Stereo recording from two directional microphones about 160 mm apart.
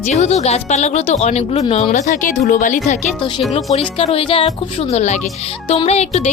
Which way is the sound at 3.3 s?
35° left (ahead or behind).